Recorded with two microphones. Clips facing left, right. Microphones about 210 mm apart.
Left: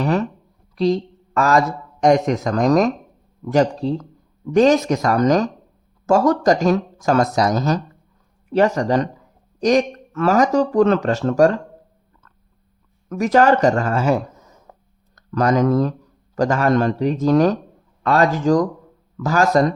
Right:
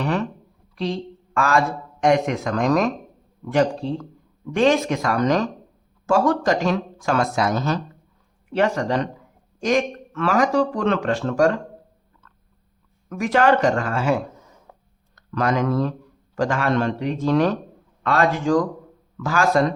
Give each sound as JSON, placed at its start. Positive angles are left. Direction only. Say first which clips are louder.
{"t": 0.0, "sound": "speech", "louder": "left 4 dB", "side_deg": 40}
{"t": 13.1, "sound": "a man's voice", "louder": "left 3 dB", "side_deg": 40}